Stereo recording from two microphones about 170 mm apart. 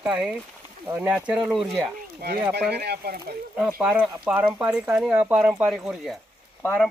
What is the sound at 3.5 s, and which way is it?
Speech, 5° right (ahead or behind).